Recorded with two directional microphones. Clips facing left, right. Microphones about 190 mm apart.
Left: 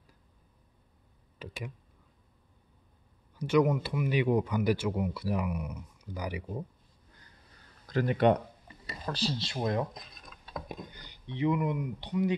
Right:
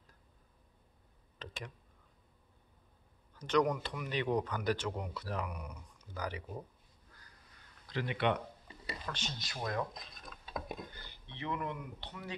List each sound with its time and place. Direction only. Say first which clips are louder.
1.4 s speech: left 5 dB; 10° left (ahead or behind)
3.3 s speech: left 5 dB; 10° left (ahead or behind)
7.9 s speech: left 8 dB; 45° left (ahead or behind); by 9.8 s 25° left (ahead or behind)
10.4 s a sound: left 1 dB; 5° right (ahead or behind)
10.9 s speech: left 8 dB; 15° left (ahead or behind)